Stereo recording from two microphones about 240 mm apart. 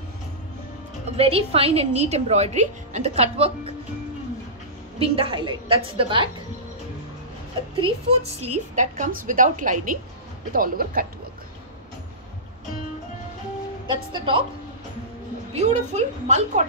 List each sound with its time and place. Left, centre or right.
1.0 s a woman's voice: right
4.9 s a woman's voice: right
7.7 s a woman's voice: right
13.8 s a woman's voice: right
15.5 s a woman's voice: right